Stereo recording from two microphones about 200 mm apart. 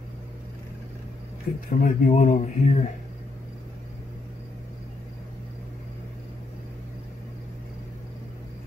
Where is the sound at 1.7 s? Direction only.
40° left (ahead or behind).